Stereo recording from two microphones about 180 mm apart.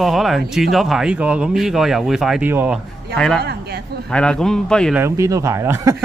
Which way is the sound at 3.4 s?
60° right (ahead or behind).